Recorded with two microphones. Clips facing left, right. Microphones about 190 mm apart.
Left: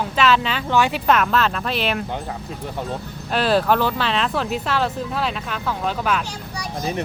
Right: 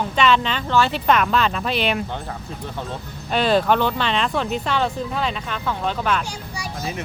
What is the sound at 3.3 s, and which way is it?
Speech, 5° left (ahead or behind).